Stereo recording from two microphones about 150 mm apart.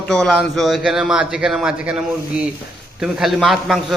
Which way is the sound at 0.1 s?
Centre (ahead or behind).